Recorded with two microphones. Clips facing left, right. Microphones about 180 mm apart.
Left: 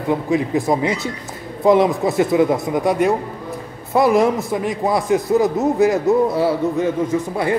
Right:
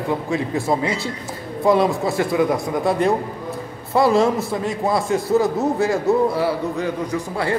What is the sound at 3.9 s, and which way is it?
A man's voice, 15° left (ahead or behind).